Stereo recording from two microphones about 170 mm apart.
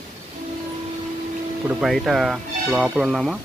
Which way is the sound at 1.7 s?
Centre (ahead or behind).